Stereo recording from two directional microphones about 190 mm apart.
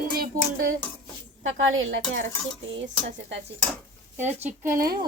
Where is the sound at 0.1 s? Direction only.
50° right (ahead or behind).